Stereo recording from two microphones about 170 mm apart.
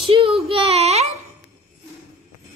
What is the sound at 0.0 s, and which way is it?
Child singing, 35° right (ahead or behind).